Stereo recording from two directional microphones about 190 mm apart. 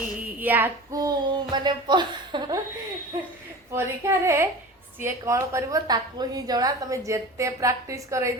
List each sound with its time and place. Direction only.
0.3 s speech: 10° right (ahead or behind)
3.7 s a woman's voice: 15° right (ahead or behind)